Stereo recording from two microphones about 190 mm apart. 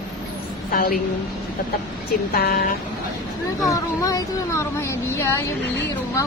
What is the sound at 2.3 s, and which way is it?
Speech, 50° left (ahead or behind).